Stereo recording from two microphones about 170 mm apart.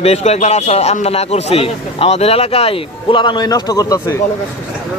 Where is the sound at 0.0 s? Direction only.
40° left (ahead or behind); by 4.2 s 20° left (ahead or behind).